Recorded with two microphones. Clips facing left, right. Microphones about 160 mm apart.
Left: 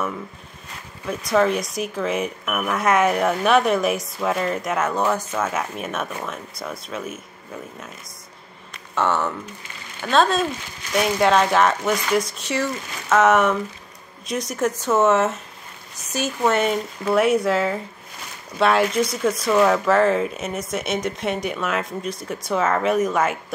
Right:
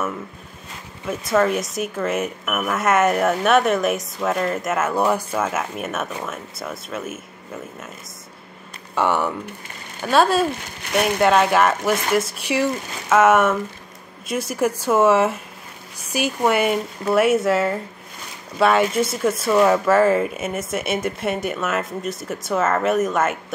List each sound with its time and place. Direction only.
1.0 s speech: centre (ahead or behind)
8.9 s speech: 15° right (ahead or behind)
10.8 s speech: 60° right (ahead or behind)
11.1 s speech: 5° right (ahead or behind)